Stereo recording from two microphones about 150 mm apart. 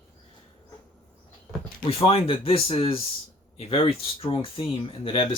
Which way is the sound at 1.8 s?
40° left (ahead or behind).